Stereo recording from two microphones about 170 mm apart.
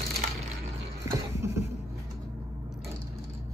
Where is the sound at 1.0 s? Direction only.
15° right (ahead or behind).